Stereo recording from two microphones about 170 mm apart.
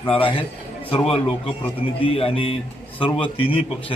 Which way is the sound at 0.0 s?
30° left (ahead or behind).